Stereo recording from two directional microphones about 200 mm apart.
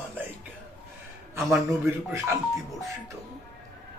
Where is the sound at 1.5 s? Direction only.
10° right (ahead or behind).